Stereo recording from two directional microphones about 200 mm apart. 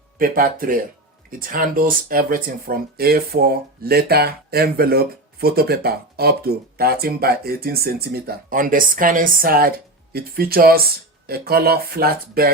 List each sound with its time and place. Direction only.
0.2 s speech: 45° right (ahead or behind)